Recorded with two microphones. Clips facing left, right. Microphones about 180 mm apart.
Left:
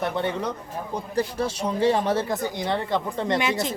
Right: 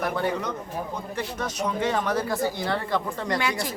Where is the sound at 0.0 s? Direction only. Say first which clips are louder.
Left 1 dB; 25° left (ahead or behind).